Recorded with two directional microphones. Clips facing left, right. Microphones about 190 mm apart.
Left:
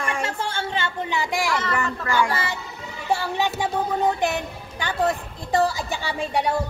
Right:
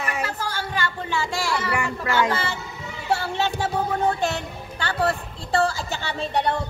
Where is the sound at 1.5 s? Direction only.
10° right (ahead or behind).